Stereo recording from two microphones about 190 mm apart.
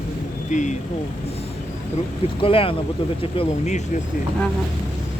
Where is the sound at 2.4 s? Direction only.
30° left (ahead or behind).